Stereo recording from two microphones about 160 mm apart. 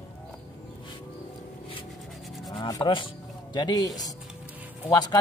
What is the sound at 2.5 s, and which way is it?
Speech, 30° left (ahead or behind).